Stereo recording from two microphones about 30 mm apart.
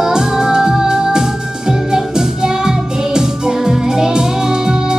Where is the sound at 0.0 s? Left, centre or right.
Right.